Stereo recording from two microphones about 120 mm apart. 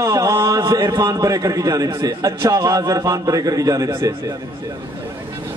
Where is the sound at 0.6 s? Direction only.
35° right (ahead or behind).